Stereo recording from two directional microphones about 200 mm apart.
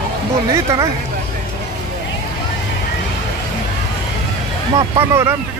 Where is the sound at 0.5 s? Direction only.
15° right (ahead or behind).